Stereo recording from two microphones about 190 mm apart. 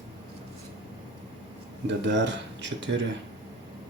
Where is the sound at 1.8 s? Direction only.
65° right (ahead or behind).